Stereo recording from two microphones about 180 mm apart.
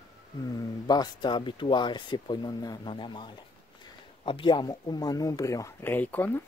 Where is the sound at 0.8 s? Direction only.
25° left (ahead or behind).